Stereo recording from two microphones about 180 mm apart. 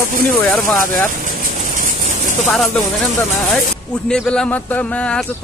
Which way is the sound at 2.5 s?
Centre (ahead or behind).